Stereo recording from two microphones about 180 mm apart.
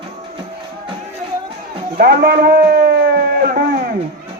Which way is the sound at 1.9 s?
55° right (ahead or behind).